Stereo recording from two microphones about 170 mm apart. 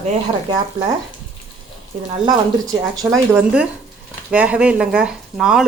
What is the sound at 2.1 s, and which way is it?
Speech, 25° right (ahead or behind).